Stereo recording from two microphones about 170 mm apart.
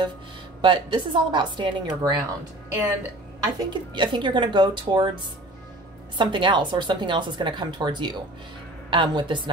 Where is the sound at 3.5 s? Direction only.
25° right (ahead or behind).